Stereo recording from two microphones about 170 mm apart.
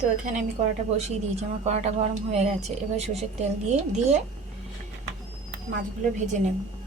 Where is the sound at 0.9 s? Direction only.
40° right (ahead or behind).